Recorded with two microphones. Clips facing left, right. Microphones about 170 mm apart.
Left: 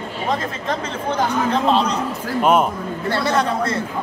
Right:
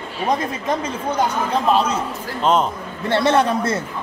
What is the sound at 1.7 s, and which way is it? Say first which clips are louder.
Speech: right 3 dB; 10° right (ahead or behind).